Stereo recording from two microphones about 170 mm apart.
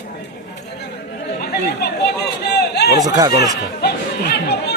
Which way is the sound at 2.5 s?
75° left (ahead or behind).